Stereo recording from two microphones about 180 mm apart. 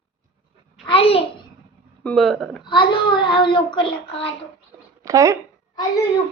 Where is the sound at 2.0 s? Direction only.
5° left (ahead or behind).